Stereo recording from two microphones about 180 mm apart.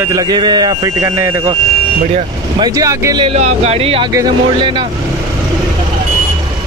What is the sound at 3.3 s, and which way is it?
Speech, 40° right (ahead or behind).